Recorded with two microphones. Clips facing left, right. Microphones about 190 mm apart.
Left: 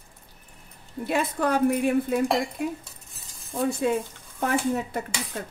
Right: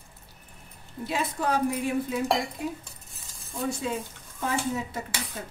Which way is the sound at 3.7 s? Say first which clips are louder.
Left 6 dB; 55° left (ahead or behind).